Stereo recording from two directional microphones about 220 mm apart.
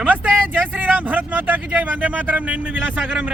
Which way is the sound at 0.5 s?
10° right (ahead or behind).